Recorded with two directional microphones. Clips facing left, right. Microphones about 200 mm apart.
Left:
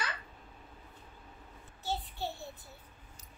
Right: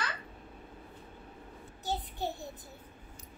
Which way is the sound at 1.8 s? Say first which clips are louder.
Right 2 dB; 15° right (ahead or behind).